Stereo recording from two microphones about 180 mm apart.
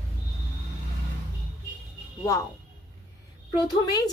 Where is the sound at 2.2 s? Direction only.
20° left (ahead or behind).